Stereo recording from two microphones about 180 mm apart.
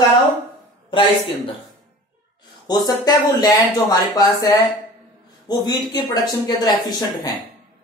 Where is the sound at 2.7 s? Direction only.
20° left (ahead or behind).